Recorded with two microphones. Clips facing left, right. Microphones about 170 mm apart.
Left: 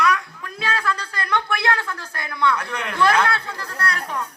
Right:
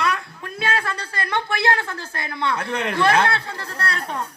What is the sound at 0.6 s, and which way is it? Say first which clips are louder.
A woman's voice: even; 25° right (ahead or behind).